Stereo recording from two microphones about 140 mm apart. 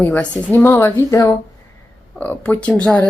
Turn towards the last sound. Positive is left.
turn(degrees=10)  # may be behind; listen again after turning